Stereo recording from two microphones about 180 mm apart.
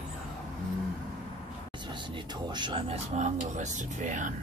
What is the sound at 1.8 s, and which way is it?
Speech, 25° right (ahead or behind).